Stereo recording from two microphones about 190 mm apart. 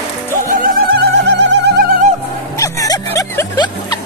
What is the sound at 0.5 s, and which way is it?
Music, 50° right (ahead or behind).